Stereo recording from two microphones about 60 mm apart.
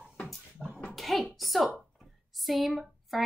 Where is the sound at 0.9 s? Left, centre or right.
Centre.